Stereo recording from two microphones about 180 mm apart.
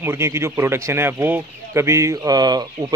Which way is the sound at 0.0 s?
15° right (ahead or behind).